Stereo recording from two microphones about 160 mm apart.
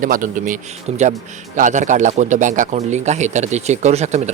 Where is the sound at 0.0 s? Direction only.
55° right (ahead or behind).